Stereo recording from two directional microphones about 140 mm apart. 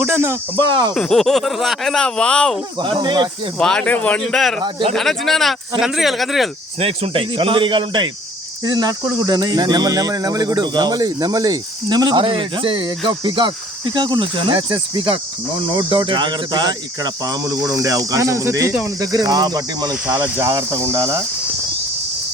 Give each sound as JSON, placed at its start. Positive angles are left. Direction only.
{"t": 0.0, "sound": "speech", "side_deg": -15}
{"t": 0.6, "sound": "speech", "side_deg": -35}
{"t": 0.9, "sound": "speech", "side_deg": 5}
{"t": 2.7, "sound": "speech", "side_deg": -35}
{"t": 3.6, "sound": "speech", "side_deg": 5}
{"t": 4.6, "sound": "speech", "side_deg": -35}
{"t": 4.9, "sound": "speech", "side_deg": 0}
{"t": 6.7, "sound": "speech", "side_deg": -45}
{"t": 20.1, "sound": "speech", "side_deg": -15}